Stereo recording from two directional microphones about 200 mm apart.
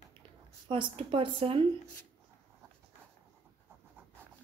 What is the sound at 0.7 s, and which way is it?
Speech, 25° right (ahead or behind).